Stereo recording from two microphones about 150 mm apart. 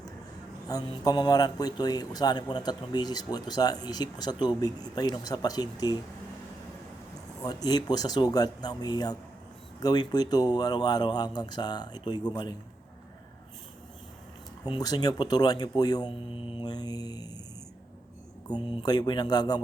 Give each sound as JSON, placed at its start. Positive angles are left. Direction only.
{"t": 0.7, "sound": "speech", "side_deg": 25}
{"t": 7.4, "sound": "speech", "side_deg": 25}
{"t": 14.7, "sound": "speech", "side_deg": 25}
{"t": 16.3, "sound": "speech", "side_deg": 40}
{"t": 18.7, "sound": "speech", "side_deg": 25}